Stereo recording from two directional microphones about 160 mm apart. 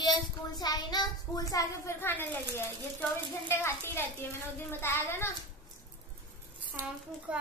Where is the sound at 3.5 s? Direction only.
15° left (ahead or behind).